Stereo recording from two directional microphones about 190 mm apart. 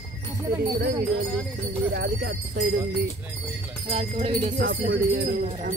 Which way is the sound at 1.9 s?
60° right (ahead or behind).